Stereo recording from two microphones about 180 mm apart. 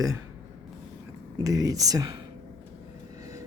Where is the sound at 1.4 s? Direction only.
20° right (ahead or behind).